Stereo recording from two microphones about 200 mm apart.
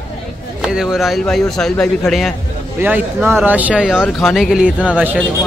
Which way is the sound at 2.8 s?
10° right (ahead or behind).